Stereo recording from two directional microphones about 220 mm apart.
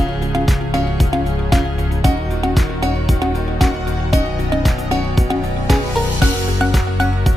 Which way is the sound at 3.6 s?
Centre (ahead or behind).